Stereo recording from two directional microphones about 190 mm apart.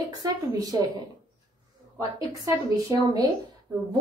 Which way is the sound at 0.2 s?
20° right (ahead or behind).